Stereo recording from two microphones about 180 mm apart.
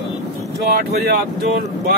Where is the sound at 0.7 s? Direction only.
60° right (ahead or behind).